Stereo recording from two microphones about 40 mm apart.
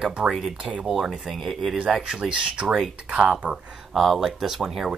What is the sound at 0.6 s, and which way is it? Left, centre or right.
Speech, right.